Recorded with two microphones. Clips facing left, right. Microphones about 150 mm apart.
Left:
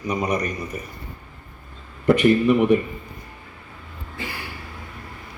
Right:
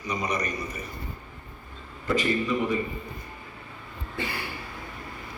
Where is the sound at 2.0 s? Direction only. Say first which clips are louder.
Left 9 dB; 65° left (ahead or behind).